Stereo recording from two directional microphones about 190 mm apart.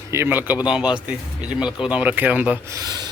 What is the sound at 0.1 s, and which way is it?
Speech, 10° right (ahead or behind).